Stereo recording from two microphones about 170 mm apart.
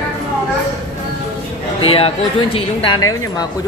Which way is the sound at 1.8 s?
35° left (ahead or behind).